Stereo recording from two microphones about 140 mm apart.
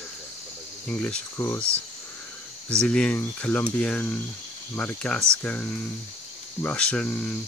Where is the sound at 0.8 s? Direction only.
10° left (ahead or behind).